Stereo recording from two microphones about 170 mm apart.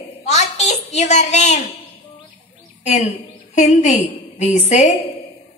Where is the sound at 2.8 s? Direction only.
40° left (ahead or behind).